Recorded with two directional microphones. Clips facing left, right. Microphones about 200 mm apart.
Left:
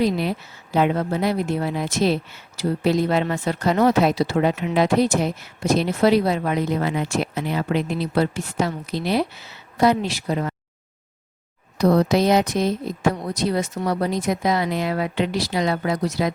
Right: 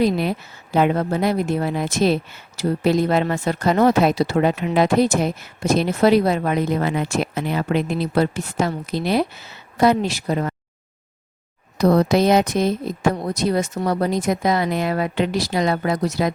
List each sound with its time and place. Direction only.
0.0 s speech: 50° right (ahead or behind)
11.8 s speech: 50° right (ahead or behind)